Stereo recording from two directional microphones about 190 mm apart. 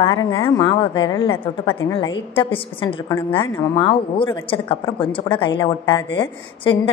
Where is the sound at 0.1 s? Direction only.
20° left (ahead or behind).